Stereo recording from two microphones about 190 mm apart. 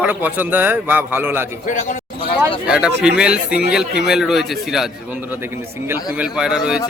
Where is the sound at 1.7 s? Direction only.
40° left (ahead or behind).